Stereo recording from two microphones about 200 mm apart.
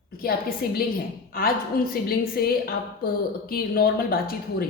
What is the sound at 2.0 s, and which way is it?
Speech, 50° left (ahead or behind).